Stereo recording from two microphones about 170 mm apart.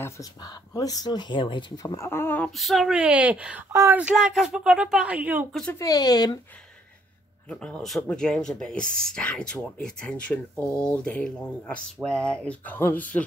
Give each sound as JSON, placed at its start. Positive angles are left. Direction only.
{"t": 0.0, "sound": "speech", "side_deg": 20}
{"t": 5.5, "sound": "speech", "side_deg": 5}
{"t": 5.8, "sound": "speech", "side_deg": 20}
{"t": 7.4, "sound": "speech", "side_deg": 5}